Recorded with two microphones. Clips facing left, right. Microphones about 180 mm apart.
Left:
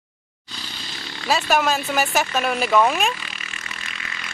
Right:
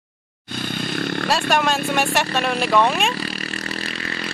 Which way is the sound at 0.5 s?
55° right (ahead or behind).